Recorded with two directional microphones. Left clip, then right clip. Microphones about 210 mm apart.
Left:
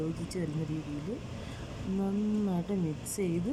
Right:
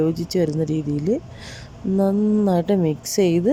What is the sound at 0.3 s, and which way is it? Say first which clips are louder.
Speech: right 18 dB; 40° right (ahead or behind).